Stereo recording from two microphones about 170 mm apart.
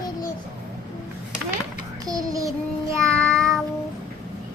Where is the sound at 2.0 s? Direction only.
20° right (ahead or behind).